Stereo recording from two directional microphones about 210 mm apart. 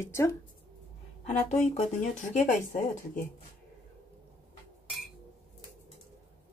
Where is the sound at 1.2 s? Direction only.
30° left (ahead or behind).